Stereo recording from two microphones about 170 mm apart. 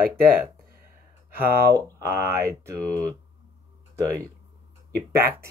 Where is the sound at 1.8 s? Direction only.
15° right (ahead or behind).